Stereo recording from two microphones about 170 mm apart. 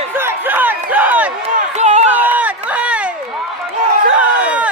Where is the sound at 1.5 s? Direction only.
40° right (ahead or behind).